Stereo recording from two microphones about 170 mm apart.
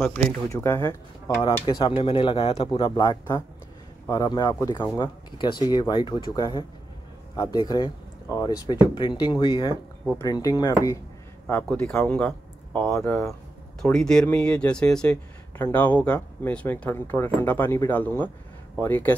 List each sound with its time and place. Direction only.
0.5 s speech: 15° left (ahead or behind)
11.4 s speech: 10° left (ahead or behind)